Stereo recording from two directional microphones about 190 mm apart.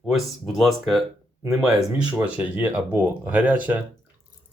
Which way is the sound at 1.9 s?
5° right (ahead or behind).